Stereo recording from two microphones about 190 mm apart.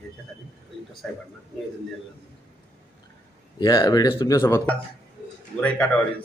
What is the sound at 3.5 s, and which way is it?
Speech, 20° left (ahead or behind).